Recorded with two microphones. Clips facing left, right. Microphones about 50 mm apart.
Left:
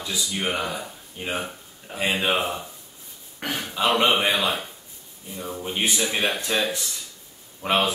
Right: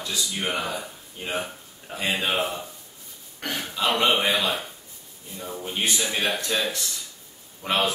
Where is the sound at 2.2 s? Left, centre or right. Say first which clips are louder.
Left 2 dB; centre.